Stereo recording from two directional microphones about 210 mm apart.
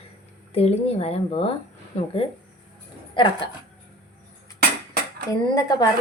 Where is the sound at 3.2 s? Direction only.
25° left (ahead or behind).